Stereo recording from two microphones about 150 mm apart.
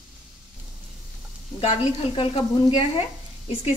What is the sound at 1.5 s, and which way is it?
Speech, 35° left (ahead or behind).